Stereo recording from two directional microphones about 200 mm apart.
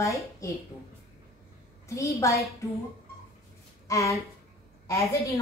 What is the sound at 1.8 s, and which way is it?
Speech, 15° left (ahead or behind).